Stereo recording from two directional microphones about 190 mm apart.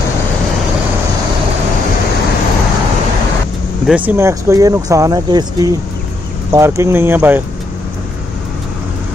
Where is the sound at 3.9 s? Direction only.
10° right (ahead or behind).